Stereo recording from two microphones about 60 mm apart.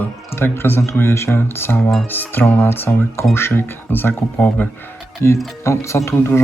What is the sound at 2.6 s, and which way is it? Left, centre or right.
Speech, left.